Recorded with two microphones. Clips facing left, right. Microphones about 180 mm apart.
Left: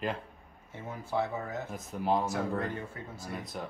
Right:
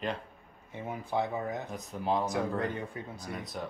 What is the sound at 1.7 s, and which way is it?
Speech, centre (ahead or behind).